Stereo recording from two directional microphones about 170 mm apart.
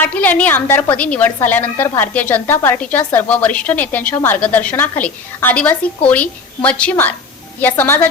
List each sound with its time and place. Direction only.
0.0 s a woman's voice: 10° left (ahead or behind)